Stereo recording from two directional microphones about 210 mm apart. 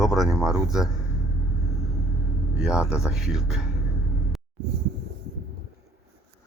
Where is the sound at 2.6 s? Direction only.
5° right (ahead or behind).